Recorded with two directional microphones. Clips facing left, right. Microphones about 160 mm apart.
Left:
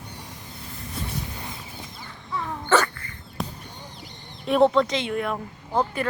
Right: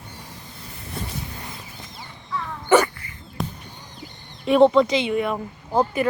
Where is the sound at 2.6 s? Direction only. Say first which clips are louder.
Right 5 dB; 15° right (ahead or behind).